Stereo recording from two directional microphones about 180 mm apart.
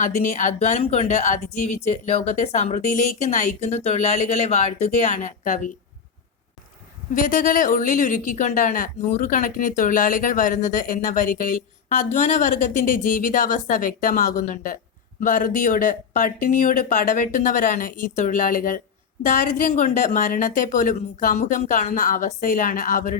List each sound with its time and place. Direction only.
0.0 s speech: 45° left (ahead or behind)
7.1 s speech: 50° left (ahead or behind)